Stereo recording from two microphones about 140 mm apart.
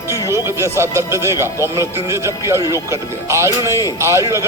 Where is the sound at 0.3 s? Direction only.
20° right (ahead or behind).